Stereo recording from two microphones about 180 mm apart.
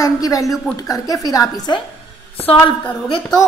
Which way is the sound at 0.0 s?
20° left (ahead or behind).